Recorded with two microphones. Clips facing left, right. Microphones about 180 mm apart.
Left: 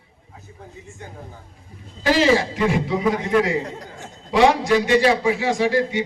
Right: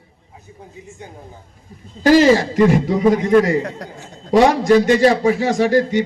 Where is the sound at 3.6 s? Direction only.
70° right (ahead or behind).